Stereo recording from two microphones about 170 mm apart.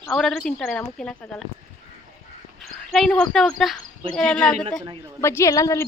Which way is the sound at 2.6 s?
Centre (ahead or behind).